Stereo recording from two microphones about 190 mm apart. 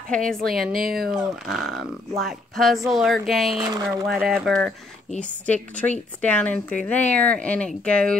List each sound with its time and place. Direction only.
0.1 s speech: 5° left (ahead or behind)
0.7 s speech: 50° right (ahead or behind)
1.1 s speech: centre (ahead or behind)
3.5 s speech: 20° right (ahead or behind)
4.1 s a woman's voice: 5° right (ahead or behind)